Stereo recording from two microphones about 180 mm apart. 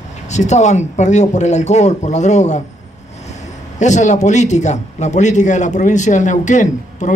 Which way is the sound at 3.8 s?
40° left (ahead or behind).